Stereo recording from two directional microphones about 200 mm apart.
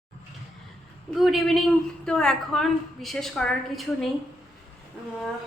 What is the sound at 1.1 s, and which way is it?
A woman's voice, centre (ahead or behind).